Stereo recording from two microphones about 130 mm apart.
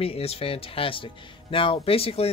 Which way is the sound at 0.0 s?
50° left (ahead or behind).